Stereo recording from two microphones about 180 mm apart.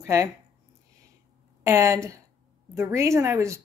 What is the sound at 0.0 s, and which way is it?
Speech, 15° right (ahead or behind).